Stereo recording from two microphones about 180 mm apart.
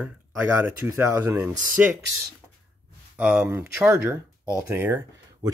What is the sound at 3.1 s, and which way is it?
Speech, 10° right (ahead or behind).